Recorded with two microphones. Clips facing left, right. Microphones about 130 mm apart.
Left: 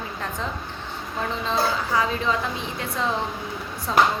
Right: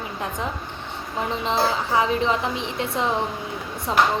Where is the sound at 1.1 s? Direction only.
20° right (ahead or behind).